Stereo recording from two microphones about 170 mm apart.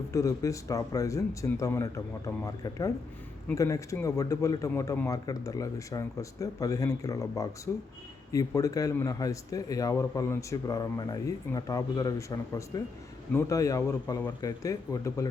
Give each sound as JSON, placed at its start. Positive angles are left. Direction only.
{"t": 0.1, "sound": "speech", "side_deg": 20}